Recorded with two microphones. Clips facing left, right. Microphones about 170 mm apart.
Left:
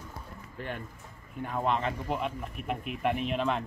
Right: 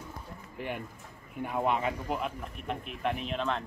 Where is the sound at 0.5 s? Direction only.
10° right (ahead or behind).